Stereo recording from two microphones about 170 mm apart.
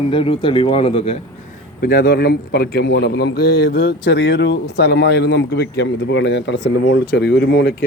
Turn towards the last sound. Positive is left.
turn(degrees=75)  # may be behind; listen again after turning